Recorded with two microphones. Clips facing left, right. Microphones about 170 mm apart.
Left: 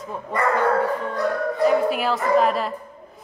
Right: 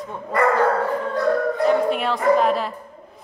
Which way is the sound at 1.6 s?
5° left (ahead or behind).